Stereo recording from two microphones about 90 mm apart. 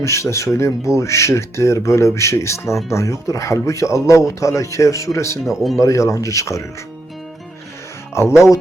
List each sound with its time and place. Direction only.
0.0 s speech: 35° left (ahead or behind)
5.4 s speech: centre (ahead or behind)
5.8 s speech: 35° left (ahead or behind)
8.1 s speech: 30° left (ahead or behind)